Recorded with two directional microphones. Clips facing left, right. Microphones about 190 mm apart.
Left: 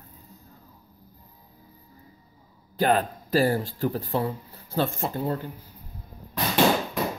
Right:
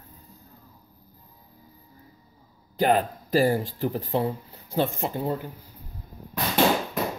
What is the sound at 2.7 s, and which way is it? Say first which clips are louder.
Speech: right 1 dB; 15° right (ahead or behind).